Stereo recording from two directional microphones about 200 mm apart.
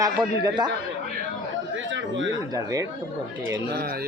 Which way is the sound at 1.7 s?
65° right (ahead or behind).